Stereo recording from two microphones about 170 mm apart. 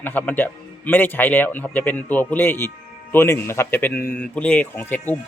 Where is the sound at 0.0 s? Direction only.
10° left (ahead or behind).